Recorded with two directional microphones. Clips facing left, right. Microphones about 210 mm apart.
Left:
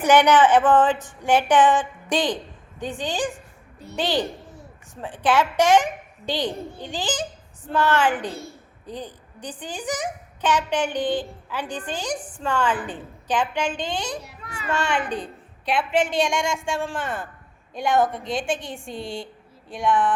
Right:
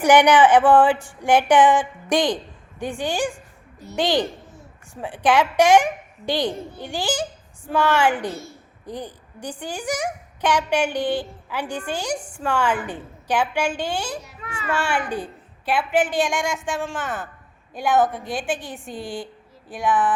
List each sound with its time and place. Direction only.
0.0 s a woman's voice: 15° right (ahead or behind)
18.5 s a woman's voice: 25° left (ahead or behind)
18.9 s a woman's voice: 5° right (ahead or behind)